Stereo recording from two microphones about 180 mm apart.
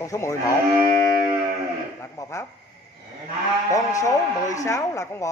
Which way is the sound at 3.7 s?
20° left (ahead or behind).